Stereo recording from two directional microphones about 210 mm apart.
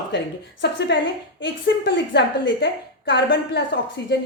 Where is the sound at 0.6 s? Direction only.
55° left (ahead or behind).